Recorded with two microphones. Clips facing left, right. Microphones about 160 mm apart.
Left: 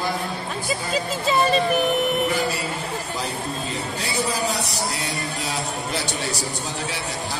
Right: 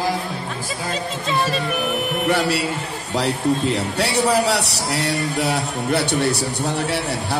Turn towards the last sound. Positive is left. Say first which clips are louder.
# right 8 dB
turn(degrees=-60)  # may be behind; listen again after turning